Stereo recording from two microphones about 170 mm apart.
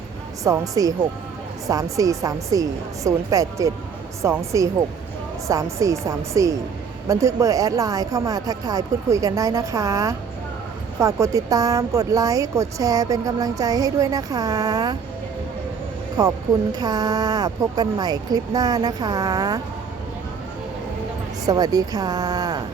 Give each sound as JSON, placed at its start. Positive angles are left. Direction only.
{"t": 0.4, "sound": "speech", "side_deg": -20}
{"t": 16.2, "sound": "speech", "side_deg": -25}
{"t": 21.4, "sound": "speech", "side_deg": -20}